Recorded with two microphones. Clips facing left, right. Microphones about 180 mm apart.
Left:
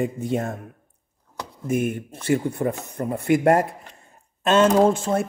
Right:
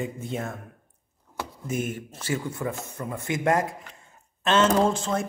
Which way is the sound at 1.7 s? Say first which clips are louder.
Left 7 dB; 55° left (ahead or behind).